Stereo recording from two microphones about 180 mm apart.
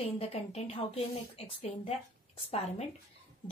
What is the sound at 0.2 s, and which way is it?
A woman's voice, 35° left (ahead or behind).